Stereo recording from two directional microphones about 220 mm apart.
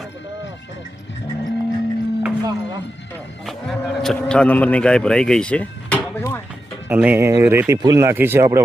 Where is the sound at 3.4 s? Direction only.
Centre (ahead or behind).